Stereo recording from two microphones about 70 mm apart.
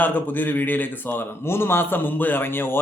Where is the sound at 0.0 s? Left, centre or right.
Left.